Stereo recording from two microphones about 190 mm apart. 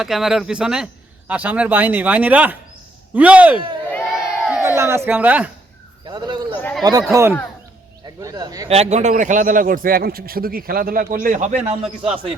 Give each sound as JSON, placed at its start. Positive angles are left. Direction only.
{"t": 0.0, "sound": "speech", "side_deg": 0}
{"t": 3.8, "sound": "crowd", "side_deg": 5}
{"t": 4.6, "sound": "speech", "side_deg": -15}
{"t": 6.1, "sound": "bird", "side_deg": -25}
{"t": 6.6, "sound": "a sound", "side_deg": 10}
{"t": 7.1, "sound": "speech", "side_deg": -15}
{"t": 8.7, "sound": "a man's voice", "side_deg": -35}
{"t": 11.8, "sound": "speech", "side_deg": -5}